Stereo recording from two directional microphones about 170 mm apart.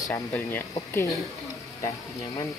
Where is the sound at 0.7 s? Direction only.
20° left (ahead or behind).